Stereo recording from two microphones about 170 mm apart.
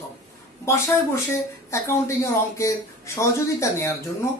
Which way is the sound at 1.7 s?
15° left (ahead or behind).